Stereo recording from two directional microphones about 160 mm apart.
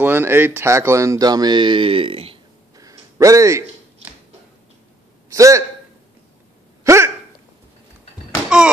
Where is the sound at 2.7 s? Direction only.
20° right (ahead or behind).